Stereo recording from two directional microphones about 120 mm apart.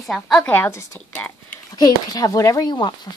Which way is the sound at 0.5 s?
20° left (ahead or behind).